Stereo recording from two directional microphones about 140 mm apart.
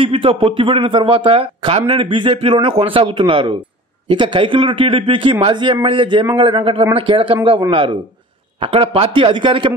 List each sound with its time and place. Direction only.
0.0 s a man's voice: 40° right (ahead or behind)